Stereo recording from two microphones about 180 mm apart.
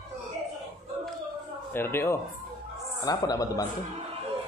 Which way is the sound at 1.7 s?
10° left (ahead or behind).